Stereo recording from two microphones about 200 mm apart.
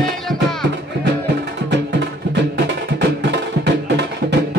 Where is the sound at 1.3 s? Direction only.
60° right (ahead or behind).